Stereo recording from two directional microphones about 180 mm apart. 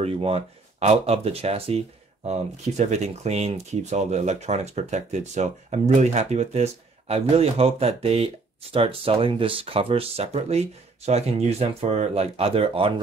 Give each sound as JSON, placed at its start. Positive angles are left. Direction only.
{"t": 0.0, "sound": "speech", "side_deg": -30}